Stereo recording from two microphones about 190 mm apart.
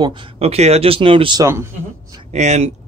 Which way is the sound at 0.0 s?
30° right (ahead or behind).